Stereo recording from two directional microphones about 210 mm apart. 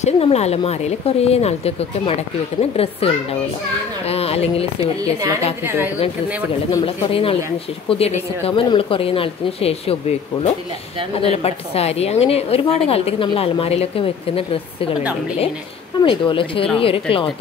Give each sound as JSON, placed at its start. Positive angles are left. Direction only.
{"t": 0.0, "sound": "a woman's voice", "side_deg": 30}
{"t": 6.7, "sound": "a woman's voice", "side_deg": 25}
{"t": 16.0, "sound": "a woman's voice", "side_deg": 25}